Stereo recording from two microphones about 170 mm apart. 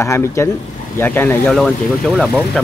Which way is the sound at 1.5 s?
Centre (ahead or behind).